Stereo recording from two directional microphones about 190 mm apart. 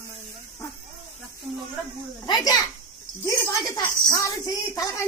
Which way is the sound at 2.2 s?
20° left (ahead or behind).